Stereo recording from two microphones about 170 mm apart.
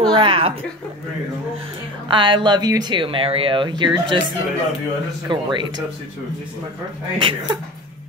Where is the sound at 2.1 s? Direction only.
30° right (ahead or behind).